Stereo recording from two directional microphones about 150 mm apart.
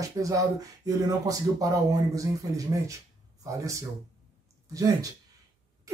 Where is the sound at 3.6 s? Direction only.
20° right (ahead or behind).